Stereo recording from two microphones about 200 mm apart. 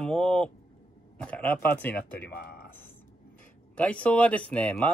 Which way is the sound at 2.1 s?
50° left (ahead or behind).